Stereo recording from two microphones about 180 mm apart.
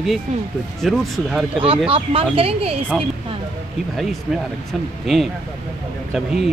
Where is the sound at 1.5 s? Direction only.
30° right (ahead or behind).